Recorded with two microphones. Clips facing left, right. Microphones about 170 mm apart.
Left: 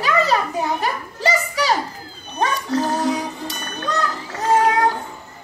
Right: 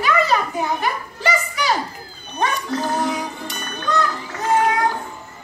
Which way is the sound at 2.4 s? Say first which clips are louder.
Left 2 dB; 35° left (ahead or behind).